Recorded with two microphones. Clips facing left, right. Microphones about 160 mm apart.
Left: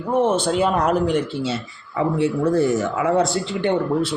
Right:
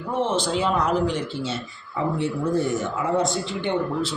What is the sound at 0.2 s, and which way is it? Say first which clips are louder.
Speech: left 4 dB; 50° left (ahead or behind).